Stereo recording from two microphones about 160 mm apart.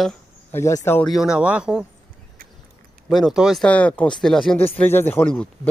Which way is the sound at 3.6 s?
10° left (ahead or behind).